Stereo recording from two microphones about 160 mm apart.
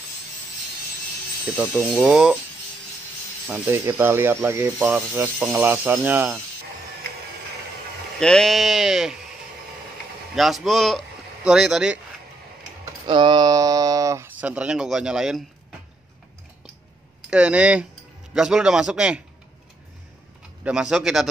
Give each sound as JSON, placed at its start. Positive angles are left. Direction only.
{"t": 1.7, "sound": "speech", "side_deg": 0}
{"t": 3.4, "sound": "speech", "side_deg": -10}
{"t": 8.2, "sound": "speech", "side_deg": 5}
{"t": 10.3, "sound": "speech", "side_deg": 0}
{"t": 13.0, "sound": "speech", "side_deg": -30}
{"t": 17.3, "sound": "speech", "side_deg": -5}
{"t": 20.6, "sound": "speech", "side_deg": -5}